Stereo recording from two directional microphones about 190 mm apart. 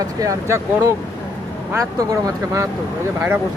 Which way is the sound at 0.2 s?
15° right (ahead or behind).